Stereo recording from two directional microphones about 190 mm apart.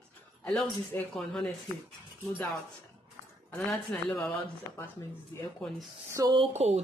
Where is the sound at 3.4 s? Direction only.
10° left (ahead or behind).